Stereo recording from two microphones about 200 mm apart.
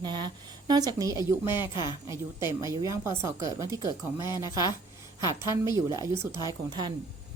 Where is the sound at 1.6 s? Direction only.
20° left (ahead or behind).